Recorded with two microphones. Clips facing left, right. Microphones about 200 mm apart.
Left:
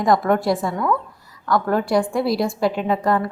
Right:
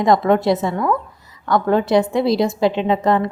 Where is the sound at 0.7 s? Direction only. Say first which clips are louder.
Right 2 dB; 5° right (ahead or behind).